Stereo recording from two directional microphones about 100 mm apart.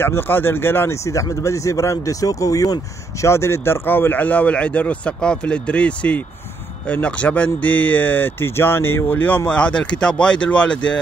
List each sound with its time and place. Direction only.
0.0 s speech: 20° left (ahead or behind)